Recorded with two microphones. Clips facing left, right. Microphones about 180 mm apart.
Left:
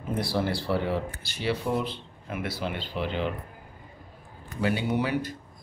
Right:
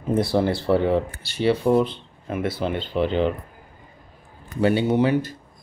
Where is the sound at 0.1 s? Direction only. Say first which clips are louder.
Right 7 dB; 25° right (ahead or behind).